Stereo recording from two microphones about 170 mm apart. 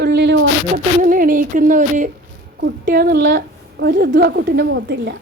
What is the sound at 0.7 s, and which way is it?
Speech, 55° right (ahead or behind).